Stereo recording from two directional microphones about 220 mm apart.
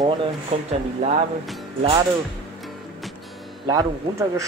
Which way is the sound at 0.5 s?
30° right (ahead or behind).